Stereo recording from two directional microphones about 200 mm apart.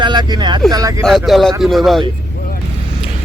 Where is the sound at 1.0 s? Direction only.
Centre (ahead or behind).